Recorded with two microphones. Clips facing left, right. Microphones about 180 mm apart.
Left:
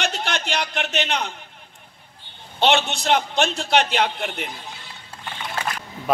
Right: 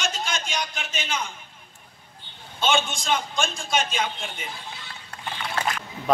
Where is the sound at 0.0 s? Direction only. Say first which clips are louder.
Left 4 dB; 65° left (ahead or behind).